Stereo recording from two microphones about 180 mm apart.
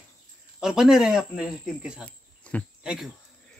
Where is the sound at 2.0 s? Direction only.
5° left (ahead or behind).